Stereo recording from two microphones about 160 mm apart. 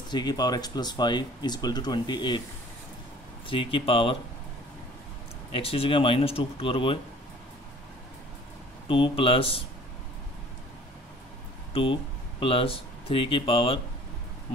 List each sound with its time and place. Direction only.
0.1 s speech: 25° left (ahead or behind)
3.4 s speech: 30° left (ahead or behind)
5.5 s speech: 35° left (ahead or behind)
8.8 s speech: 35° left (ahead or behind)
11.7 s speech: 35° left (ahead or behind)